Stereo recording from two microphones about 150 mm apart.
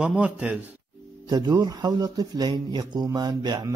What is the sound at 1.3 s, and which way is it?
A man's voice, 30° right (ahead or behind).